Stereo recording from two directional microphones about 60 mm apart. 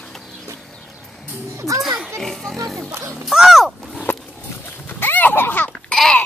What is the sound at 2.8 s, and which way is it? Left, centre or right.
Speech, right.